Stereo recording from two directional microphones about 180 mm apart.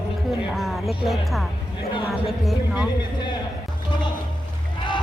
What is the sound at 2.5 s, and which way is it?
Speech, 5° right (ahead or behind).